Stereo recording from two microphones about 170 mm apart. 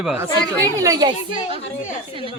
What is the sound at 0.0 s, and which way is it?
Speech, 10° right (ahead or behind).